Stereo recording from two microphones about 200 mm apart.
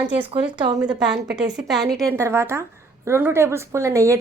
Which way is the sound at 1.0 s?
5° right (ahead or behind).